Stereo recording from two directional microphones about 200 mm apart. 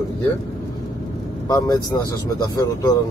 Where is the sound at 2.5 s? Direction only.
15° left (ahead or behind).